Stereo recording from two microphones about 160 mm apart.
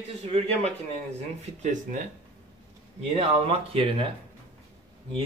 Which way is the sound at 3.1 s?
40° right (ahead or behind).